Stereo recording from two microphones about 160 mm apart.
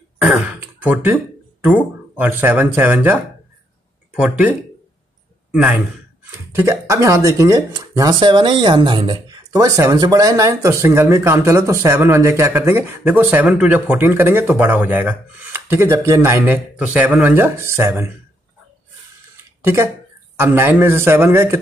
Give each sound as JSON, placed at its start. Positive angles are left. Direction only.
{"t": 0.2, "sound": "a man's voice", "side_deg": -5}
{"t": 19.6, "sound": "speech", "side_deg": -15}